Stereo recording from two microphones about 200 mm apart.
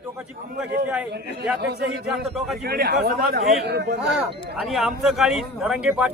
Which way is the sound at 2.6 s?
50° right (ahead or behind).